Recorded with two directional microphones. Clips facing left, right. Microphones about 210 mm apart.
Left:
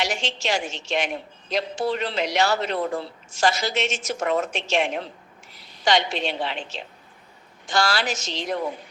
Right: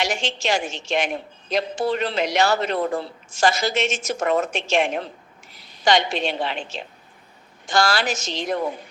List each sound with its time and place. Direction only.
0.0 s a woman's voice: 50° right (ahead or behind)